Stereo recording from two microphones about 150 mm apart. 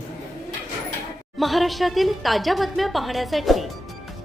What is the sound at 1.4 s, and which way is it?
A woman's voice, centre (ahead or behind).